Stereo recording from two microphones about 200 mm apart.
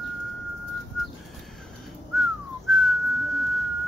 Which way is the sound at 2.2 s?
Centre (ahead or behind).